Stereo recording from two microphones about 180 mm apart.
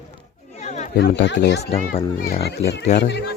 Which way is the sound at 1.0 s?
75° left (ahead or behind).